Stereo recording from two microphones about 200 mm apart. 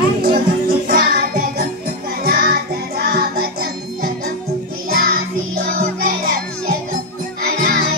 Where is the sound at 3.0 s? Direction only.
50° right (ahead or behind).